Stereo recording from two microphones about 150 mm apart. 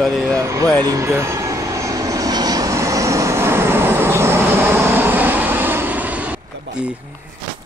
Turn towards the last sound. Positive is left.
turn(degrees=-10)  # may be behind; listen again after turning